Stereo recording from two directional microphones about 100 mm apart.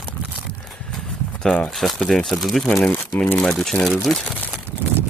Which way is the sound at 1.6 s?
Centre (ahead or behind).